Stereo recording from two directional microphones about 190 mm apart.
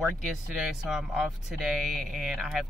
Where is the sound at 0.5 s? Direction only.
Centre (ahead or behind).